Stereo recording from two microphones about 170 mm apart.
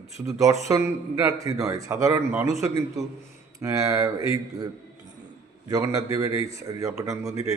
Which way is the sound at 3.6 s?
20° right (ahead or behind).